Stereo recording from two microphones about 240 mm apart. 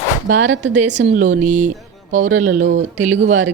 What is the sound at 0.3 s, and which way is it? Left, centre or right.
Speech, right.